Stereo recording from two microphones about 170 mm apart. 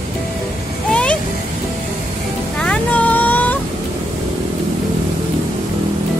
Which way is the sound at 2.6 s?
5° left (ahead or behind).